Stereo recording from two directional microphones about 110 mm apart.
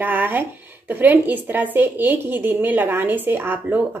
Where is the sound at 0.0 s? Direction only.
20° right (ahead or behind).